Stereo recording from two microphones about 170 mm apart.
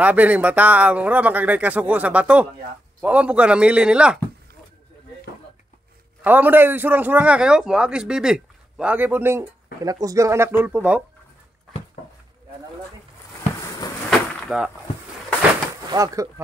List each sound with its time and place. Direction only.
0.0 s a man's voice: 10° right (ahead or behind)
6.2 s a man's voice: 10° right (ahead or behind)
14.5 s a man's voice: 5° right (ahead or behind)
15.9 s speech: 20° right (ahead or behind)